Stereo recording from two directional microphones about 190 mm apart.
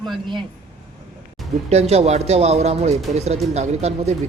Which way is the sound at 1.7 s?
35° right (ahead or behind).